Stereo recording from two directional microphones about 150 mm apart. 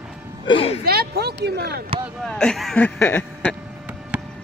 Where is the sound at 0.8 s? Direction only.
90° right.